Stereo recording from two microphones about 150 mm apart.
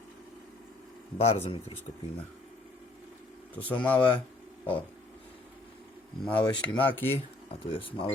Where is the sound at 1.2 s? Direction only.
40° left (ahead or behind).